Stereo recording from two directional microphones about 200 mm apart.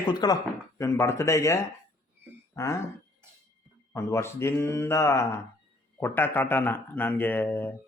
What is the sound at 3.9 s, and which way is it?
Speech, 15° left (ahead or behind).